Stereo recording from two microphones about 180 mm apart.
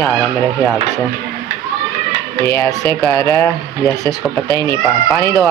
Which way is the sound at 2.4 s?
15° left (ahead or behind).